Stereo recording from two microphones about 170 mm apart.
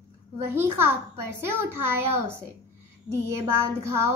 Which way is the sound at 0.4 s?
15° right (ahead or behind).